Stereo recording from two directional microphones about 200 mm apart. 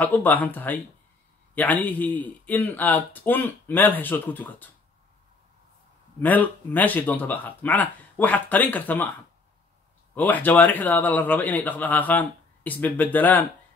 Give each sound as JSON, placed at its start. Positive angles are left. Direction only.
{"t": 0.0, "sound": "a man's voice", "side_deg": 10}
{"t": 6.2, "sound": "a man's voice", "side_deg": 10}
{"t": 10.1, "sound": "a man's voice", "side_deg": 10}